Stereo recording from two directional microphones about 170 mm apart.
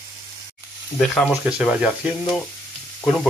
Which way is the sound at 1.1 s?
5° left (ahead or behind).